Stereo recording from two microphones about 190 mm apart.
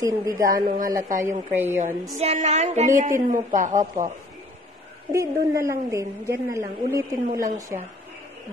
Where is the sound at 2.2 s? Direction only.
35° right (ahead or behind).